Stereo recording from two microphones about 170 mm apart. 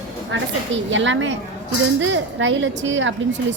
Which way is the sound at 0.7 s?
90° right.